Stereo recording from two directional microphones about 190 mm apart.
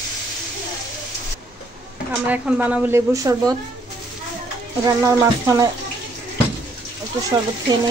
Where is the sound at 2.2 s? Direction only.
10° right (ahead or behind).